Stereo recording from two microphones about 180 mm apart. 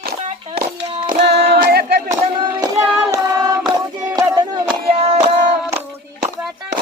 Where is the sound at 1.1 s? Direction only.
65° right (ahead or behind).